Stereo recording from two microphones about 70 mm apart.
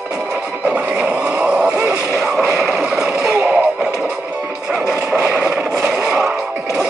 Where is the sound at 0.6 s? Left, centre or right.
Centre.